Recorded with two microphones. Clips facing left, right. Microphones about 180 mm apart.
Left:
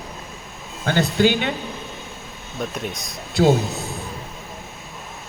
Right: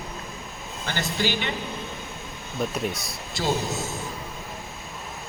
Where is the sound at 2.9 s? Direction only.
20° left (ahead or behind).